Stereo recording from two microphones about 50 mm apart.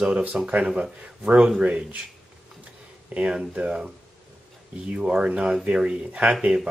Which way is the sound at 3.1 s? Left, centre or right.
Right.